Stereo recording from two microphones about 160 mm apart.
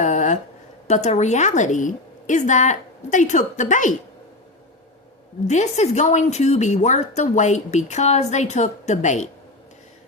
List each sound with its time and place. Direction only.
0.0 s a sound: 50° left (ahead or behind)
0.9 s a woman's voice: 45° left (ahead or behind)
5.5 s a woman's voice: 45° left (ahead or behind)